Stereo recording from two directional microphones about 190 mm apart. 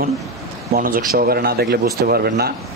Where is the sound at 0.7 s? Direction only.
50° right (ahead or behind).